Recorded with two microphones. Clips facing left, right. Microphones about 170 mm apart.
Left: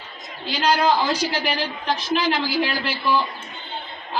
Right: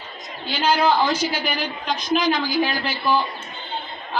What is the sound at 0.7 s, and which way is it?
A woman's voice, 10° left (ahead or behind).